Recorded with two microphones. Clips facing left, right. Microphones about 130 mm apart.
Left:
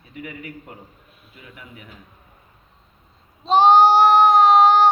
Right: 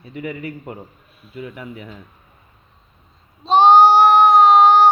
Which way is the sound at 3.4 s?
20° right (ahead or behind).